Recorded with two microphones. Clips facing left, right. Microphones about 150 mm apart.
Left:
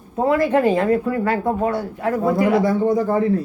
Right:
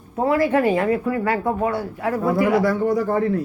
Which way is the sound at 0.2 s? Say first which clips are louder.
Left 1 dB; 20° left (ahead or behind).